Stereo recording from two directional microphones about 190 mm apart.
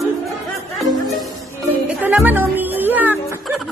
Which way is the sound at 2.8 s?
10° right (ahead or behind).